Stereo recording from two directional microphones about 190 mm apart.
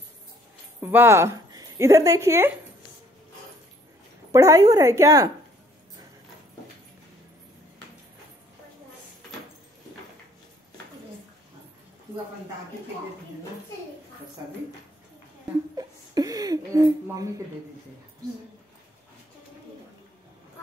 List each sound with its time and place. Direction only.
0.7 s speech: 10° right (ahead or behind)
4.3 s speech: 15° right (ahead or behind)
15.7 s speech: 20° right (ahead or behind)